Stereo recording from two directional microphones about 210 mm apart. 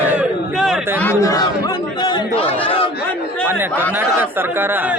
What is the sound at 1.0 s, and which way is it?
Chatter, 10° left (ahead or behind).